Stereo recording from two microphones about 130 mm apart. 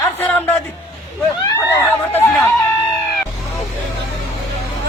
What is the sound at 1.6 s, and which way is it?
Speech, 20° left (ahead or behind).